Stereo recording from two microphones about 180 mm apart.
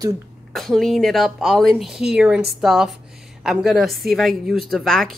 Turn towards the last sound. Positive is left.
turn(degrees=0)  # may be behind; listen again after turning